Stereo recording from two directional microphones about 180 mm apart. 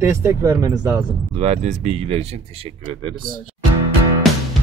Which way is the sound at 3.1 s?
50° right (ahead or behind).